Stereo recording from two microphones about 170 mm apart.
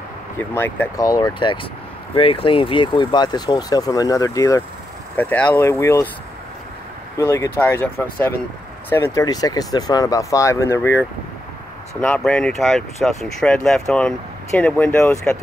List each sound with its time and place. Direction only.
0.6 s speech: 15° left (ahead or behind)
5.1 s speech: 10° left (ahead or behind)
7.2 s speech: 15° left (ahead or behind)
12.2 s speech: 5° left (ahead or behind)